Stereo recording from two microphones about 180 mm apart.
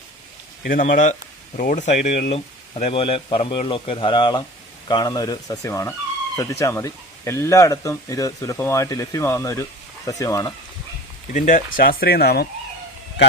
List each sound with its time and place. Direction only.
0.6 s speech: 45° left (ahead or behind); by 10.5 s 20° left (ahead or behind)
11.3 s speech: 45° left (ahead or behind)